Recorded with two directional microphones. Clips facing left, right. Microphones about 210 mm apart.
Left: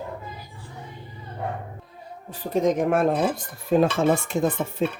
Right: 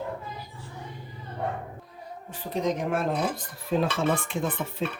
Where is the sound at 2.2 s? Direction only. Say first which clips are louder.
Left 6 dB; 45° left (ahead or behind).